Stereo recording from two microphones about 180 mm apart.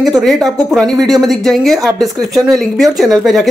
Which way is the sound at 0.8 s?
20° right (ahead or behind).